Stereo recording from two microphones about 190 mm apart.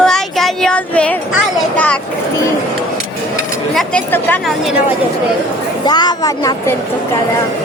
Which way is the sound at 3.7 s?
5° left (ahead or behind).